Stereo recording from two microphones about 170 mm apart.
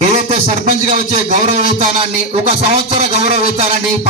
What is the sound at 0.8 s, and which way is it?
Speech, 45° right (ahead or behind).